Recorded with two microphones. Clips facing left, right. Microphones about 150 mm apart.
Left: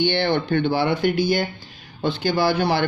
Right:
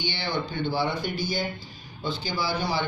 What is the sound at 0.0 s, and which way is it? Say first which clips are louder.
Speech: left 10 dB; 60° left (ahead or behind).